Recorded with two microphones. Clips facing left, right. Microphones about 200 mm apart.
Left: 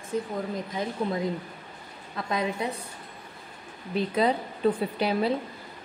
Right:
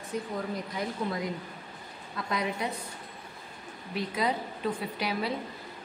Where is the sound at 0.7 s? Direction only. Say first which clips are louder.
Left 4 dB; 25° left (ahead or behind).